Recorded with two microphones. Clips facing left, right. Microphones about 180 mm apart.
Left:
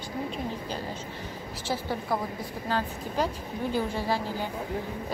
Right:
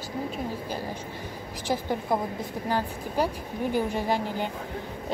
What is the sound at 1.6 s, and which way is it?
Speech, 15° right (ahead or behind).